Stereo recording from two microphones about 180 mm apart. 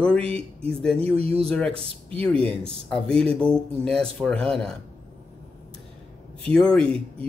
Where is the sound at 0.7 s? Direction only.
5° left (ahead or behind).